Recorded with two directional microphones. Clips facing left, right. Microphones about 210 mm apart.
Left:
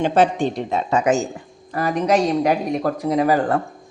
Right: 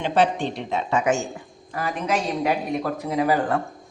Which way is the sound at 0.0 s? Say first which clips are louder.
Left 4 dB; 45° left (ahead or behind).